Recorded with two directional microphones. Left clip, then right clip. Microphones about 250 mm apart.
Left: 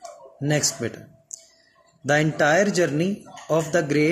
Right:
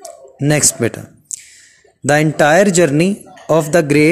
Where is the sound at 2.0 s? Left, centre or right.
Right.